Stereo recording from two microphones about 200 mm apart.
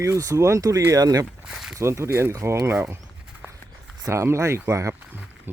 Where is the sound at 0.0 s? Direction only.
15° right (ahead or behind).